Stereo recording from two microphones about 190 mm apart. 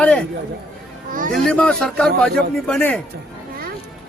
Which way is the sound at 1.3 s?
5° left (ahead or behind).